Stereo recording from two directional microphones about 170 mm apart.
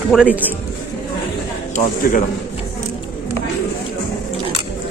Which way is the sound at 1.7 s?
50° left (ahead or behind).